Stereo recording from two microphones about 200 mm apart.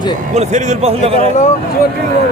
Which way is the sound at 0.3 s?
35° right (ahead or behind).